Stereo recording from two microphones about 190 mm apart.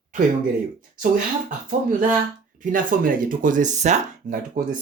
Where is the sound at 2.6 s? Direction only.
45° right (ahead or behind).